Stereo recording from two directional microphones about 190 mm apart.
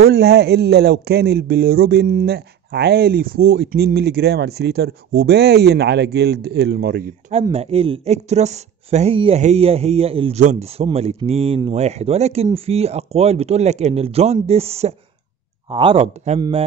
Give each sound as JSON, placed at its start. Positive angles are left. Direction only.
{"t": 0.0, "sound": "speech", "side_deg": -60}
{"t": 7.5, "sound": "speech", "side_deg": -30}